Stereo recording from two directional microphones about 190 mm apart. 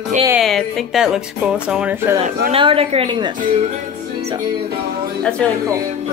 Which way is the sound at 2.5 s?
30° right (ahead or behind).